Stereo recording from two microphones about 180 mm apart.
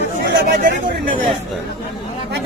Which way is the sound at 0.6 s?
50° right (ahead or behind).